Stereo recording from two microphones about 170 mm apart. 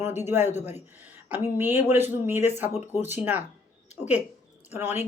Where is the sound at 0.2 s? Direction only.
10° right (ahead or behind).